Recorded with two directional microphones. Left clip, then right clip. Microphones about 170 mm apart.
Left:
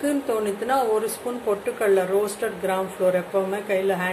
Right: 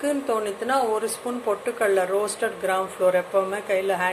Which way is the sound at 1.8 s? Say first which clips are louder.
Left 1 dB; 20° right (ahead or behind).